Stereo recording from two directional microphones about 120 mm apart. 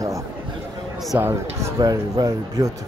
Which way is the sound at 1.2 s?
25° right (ahead or behind).